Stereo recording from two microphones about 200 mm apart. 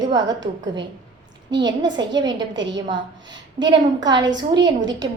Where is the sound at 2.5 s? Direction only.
65° right (ahead or behind).